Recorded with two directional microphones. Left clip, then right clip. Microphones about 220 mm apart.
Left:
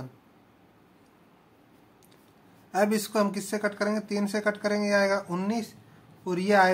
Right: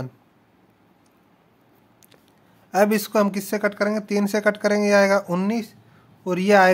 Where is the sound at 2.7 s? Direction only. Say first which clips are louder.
Right 7 dB; 45° right (ahead or behind).